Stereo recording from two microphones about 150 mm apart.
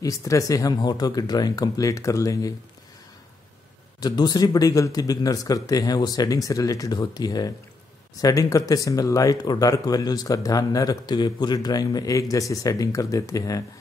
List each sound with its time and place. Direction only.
0.0 s speech: 20° left (ahead or behind)
4.0 s speech: 25° left (ahead or behind)